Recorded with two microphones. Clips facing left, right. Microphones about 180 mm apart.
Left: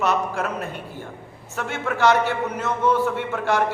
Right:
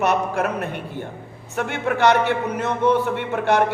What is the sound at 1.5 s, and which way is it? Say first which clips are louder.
Speech: right 4 dB; 60° right (ahead or behind).